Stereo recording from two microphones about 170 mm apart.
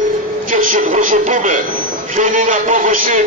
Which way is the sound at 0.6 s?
50° right (ahead or behind).